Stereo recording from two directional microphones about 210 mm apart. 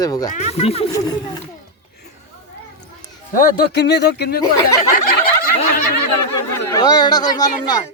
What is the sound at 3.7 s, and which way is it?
Speech, 55° left (ahead or behind).